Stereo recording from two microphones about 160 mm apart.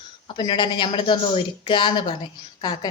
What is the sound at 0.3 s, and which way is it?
A woman's voice, 30° left (ahead or behind).